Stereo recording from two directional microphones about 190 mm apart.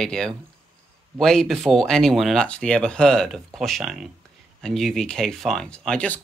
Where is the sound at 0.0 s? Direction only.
5° left (ahead or behind).